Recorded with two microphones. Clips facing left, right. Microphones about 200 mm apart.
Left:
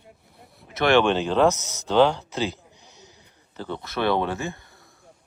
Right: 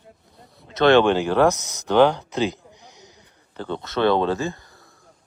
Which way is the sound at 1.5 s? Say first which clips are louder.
Right 2 dB; 15° right (ahead or behind).